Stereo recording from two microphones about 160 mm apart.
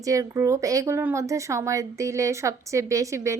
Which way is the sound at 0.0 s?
20° right (ahead or behind).